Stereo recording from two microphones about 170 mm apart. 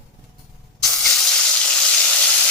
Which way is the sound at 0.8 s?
Centre (ahead or behind).